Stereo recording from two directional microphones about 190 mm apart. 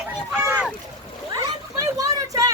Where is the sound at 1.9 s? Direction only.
20° right (ahead or behind).